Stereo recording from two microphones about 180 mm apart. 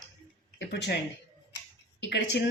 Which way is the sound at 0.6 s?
70° left (ahead or behind).